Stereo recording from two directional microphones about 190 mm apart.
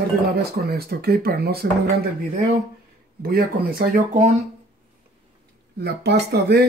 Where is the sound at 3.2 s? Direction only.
55° right (ahead or behind).